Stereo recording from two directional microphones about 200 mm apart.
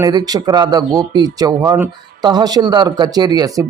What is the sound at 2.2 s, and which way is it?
A man's voice, 20° right (ahead or behind).